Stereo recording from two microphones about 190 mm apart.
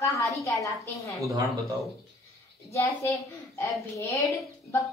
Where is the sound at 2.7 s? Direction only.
15° left (ahead or behind).